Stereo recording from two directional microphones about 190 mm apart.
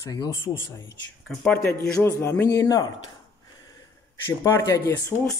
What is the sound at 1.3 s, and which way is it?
Speech, 5° left (ahead or behind).